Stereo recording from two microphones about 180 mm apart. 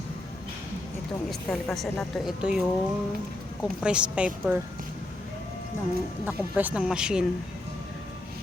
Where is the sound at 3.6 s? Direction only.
5° right (ahead or behind).